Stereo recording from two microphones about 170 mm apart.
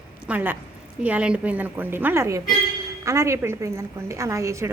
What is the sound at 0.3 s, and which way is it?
A woman's voice, 10° right (ahead or behind).